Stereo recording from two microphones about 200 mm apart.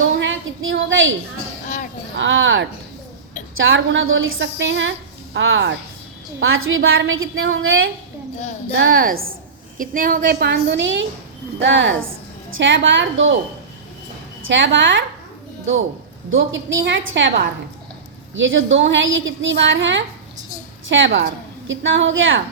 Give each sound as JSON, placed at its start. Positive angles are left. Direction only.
{"t": 0.2, "sound": "a sound", "side_deg": -75}
{"t": 1.6, "sound": "a sound", "side_deg": 40}
{"t": 2.1, "sound": "a woman's voice", "side_deg": -70}
{"t": 6.4, "sound": "a woman's voice", "side_deg": -90}
{"t": 8.9, "sound": "a woman's voice", "side_deg": -45}
{"t": 14.4, "sound": "a woman's voice", "side_deg": -65}
{"t": 16.3, "sound": "a woman's voice", "side_deg": -70}